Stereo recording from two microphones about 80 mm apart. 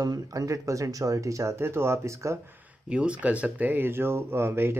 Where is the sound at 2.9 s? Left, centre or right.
Centre; by 4.8 s right.